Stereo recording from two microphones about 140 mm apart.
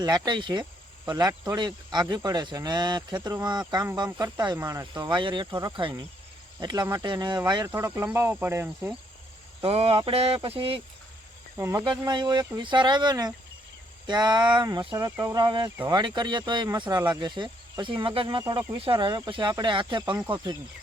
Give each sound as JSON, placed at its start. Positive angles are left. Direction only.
{"t": 0.0, "sound": "speech", "side_deg": -30}
{"t": 7.7, "sound": "speech", "side_deg": -15}
{"t": 9.6, "sound": "speech", "side_deg": -45}
{"t": 11.5, "sound": "speech", "side_deg": -20}
{"t": 11.9, "sound": "speech", "side_deg": -30}
{"t": 17.1, "sound": "cricket", "side_deg": -35}
{"t": 18.0, "sound": "speech", "side_deg": -40}